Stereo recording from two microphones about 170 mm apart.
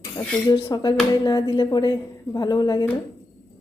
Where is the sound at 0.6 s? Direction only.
25° left (ahead or behind).